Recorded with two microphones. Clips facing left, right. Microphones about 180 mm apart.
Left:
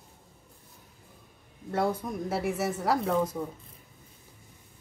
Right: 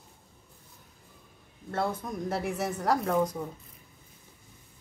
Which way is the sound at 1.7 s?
10° left (ahead or behind).